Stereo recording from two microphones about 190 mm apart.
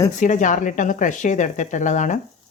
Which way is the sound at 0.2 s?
40° left (ahead or behind).